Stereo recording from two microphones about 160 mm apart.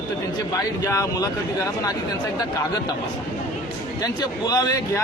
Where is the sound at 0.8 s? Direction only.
20° left (ahead or behind).